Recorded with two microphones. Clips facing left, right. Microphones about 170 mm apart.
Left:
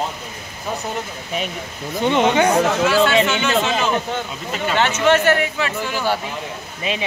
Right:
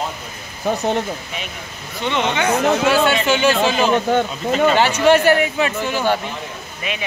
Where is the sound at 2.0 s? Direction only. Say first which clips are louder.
Left 4 dB; 40° left (ahead or behind).